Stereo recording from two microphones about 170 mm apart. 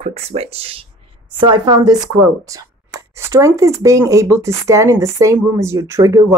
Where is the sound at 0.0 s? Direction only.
40° right (ahead or behind).